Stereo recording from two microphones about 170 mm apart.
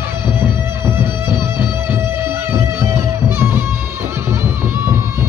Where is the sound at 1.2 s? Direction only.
25° left (ahead or behind).